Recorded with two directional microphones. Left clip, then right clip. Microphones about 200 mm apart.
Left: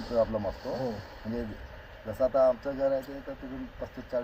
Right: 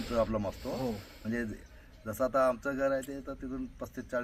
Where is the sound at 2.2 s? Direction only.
30° right (ahead or behind).